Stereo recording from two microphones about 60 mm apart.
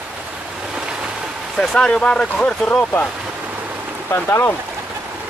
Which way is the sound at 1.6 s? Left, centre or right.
Centre.